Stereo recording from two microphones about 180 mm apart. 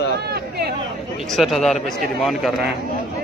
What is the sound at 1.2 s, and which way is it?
A man's voice, centre (ahead or behind).